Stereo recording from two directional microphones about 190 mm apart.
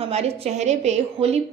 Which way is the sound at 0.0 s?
35° right (ahead or behind).